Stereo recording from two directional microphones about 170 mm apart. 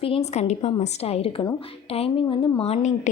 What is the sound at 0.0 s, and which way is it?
A woman's voice, 35° left (ahead or behind).